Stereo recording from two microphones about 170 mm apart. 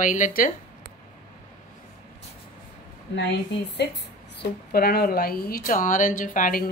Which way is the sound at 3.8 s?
75° left (ahead or behind).